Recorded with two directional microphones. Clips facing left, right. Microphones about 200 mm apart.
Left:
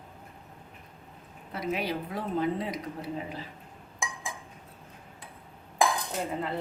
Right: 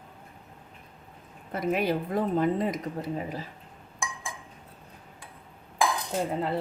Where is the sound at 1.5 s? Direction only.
50° right (ahead or behind).